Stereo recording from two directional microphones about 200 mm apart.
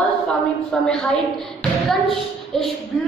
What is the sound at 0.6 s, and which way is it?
A woman's voice, 5° left (ahead or behind).